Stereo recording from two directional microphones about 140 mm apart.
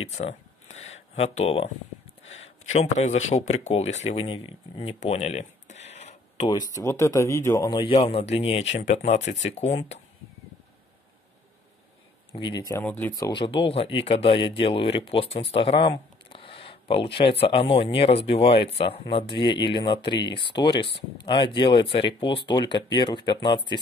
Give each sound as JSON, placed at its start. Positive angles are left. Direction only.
{"t": 0.1, "sound": "speech", "side_deg": 50}
{"t": 5.0, "sound": "a sound", "side_deg": 50}
{"t": 6.7, "sound": "speech", "side_deg": 20}
{"t": 12.3, "sound": "speech", "side_deg": 35}
{"t": 12.8, "sound": "speech", "side_deg": 10}
{"t": 13.1, "sound": "speech", "side_deg": 30}